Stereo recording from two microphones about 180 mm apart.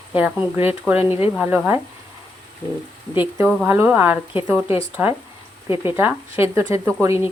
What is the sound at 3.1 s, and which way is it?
Speech, 10° right (ahead or behind).